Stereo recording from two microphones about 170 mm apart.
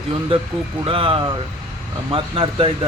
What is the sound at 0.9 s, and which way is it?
Speech, 30° right (ahead or behind).